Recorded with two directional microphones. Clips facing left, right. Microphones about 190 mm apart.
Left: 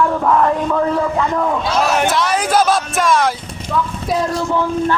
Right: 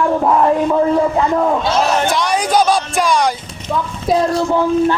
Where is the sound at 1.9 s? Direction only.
5° left (ahead or behind).